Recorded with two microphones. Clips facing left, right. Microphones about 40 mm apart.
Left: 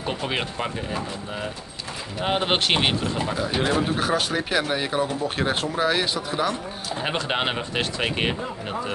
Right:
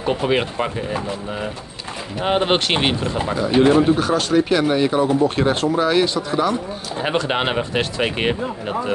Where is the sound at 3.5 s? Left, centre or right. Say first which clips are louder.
Right 10 dB; right.